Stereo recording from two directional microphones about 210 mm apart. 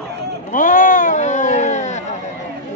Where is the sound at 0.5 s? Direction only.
40° left (ahead or behind).